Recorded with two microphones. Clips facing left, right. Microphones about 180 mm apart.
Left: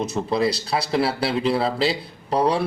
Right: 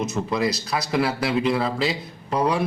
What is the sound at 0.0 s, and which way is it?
A man's voice, 30° left (ahead or behind).